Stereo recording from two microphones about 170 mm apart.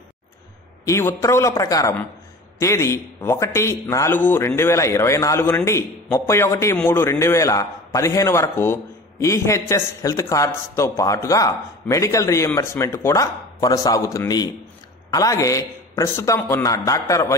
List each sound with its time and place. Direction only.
0.8 s a man's voice: 15° left (ahead or behind)